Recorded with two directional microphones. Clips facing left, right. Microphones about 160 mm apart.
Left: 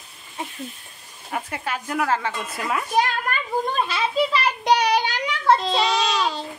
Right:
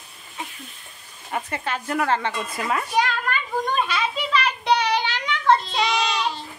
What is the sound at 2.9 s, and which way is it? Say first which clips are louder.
A child's voice: left 3 dB; 40° left (ahead or behind).